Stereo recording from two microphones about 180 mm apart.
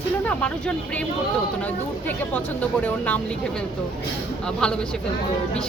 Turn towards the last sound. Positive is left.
turn(degrees=5)  # may be behind; listen again after turning